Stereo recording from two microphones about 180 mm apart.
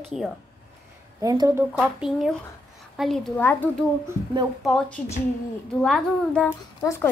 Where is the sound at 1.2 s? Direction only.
20° right (ahead or behind).